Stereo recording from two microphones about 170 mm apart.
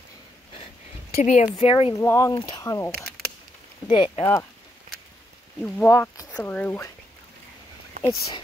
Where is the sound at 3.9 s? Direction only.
30° left (ahead or behind).